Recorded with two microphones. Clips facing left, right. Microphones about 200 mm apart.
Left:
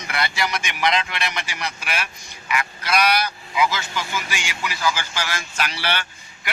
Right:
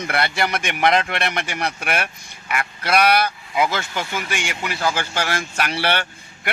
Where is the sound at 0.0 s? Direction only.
55° right (ahead or behind).